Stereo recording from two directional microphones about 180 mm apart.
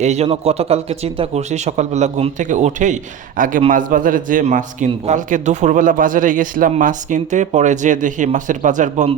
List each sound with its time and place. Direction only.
0.0 s a man's voice: 35° right (ahead or behind)